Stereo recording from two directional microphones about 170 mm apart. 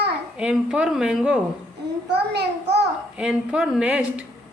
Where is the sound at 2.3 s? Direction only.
75° right (ahead or behind).